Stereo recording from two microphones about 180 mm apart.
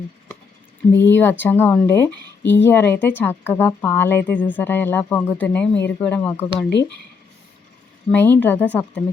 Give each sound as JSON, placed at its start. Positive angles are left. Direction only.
{"t": 1.1, "sound": "speech", "side_deg": 10}
{"t": 2.4, "sound": "speech", "side_deg": 80}
{"t": 2.6, "sound": "speech", "side_deg": 10}
{"t": 8.1, "sound": "speech", "side_deg": 10}